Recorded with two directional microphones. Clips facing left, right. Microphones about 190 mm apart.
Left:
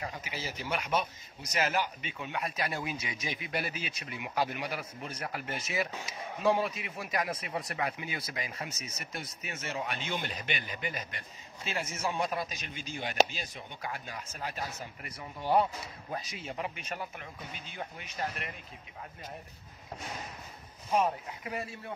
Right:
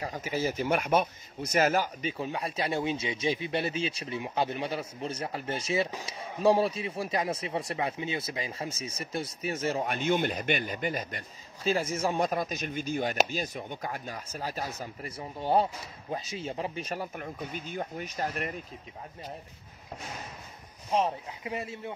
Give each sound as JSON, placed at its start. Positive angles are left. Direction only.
{"t": 0.0, "sound": "speech", "side_deg": -45}
{"t": 20.9, "sound": "speech", "side_deg": -25}